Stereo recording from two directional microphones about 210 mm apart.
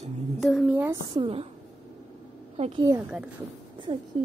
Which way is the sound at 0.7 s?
10° right (ahead or behind).